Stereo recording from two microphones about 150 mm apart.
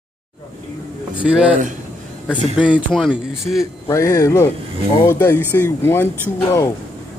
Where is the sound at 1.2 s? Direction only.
5° right (ahead or behind).